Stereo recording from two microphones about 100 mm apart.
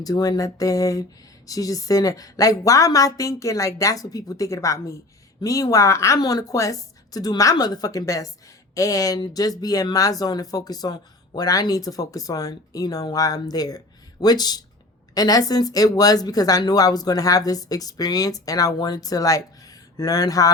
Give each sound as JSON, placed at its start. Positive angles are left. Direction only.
{"t": 0.0, "sound": "speech", "side_deg": 40}